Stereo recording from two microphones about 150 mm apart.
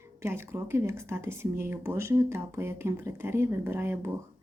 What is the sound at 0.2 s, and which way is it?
Speech, 15° right (ahead or behind).